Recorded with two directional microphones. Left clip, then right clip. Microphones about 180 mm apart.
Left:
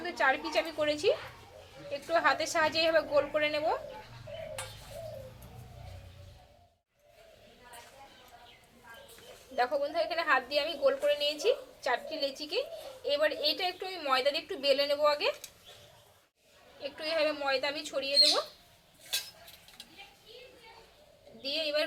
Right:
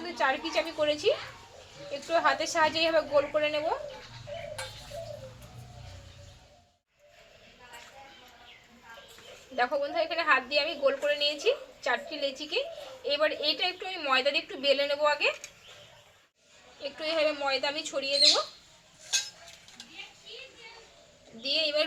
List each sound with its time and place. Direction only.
0.0 s a woman's voice: centre (ahead or behind)
9.6 s a woman's voice: 5° left (ahead or behind)
17.0 s a woman's voice: centre (ahead or behind)
21.4 s a woman's voice: centre (ahead or behind)